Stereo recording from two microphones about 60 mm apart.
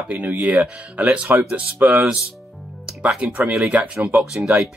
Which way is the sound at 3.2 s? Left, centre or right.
Right.